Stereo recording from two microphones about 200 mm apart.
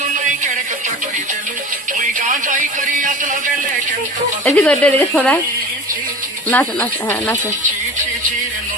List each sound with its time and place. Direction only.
2.1 s a sound: 40° right (ahead or behind)
4.4 s speech: 10° left (ahead or behind)
6.5 s speech: 10° left (ahead or behind)